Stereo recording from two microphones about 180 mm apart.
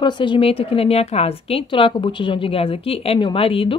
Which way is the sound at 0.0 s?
25° left (ahead or behind).